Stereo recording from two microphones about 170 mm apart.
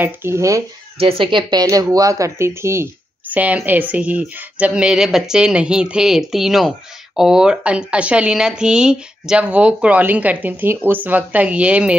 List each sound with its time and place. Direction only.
0.0 s speech: 15° right (ahead or behind)
0.9 s speech: 35° right (ahead or behind); by 12.0 s 5° right (ahead or behind)